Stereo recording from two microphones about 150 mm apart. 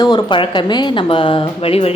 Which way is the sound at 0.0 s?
25° left (ahead or behind).